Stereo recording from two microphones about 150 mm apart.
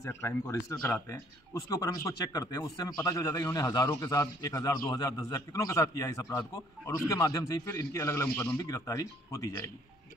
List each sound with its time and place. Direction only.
0.0 s speech: 20° left (ahead or behind)